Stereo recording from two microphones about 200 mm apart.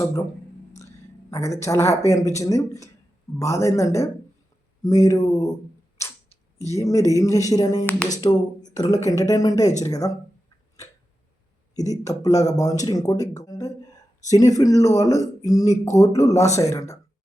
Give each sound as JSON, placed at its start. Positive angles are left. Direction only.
{"t": 1.3, "sound": "speech", "side_deg": 15}
{"t": 6.7, "sound": "speech", "side_deg": 15}
{"t": 11.9, "sound": "speech", "side_deg": 15}